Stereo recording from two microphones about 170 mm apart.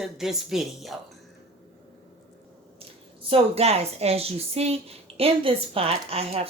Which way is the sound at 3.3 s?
35° right (ahead or behind).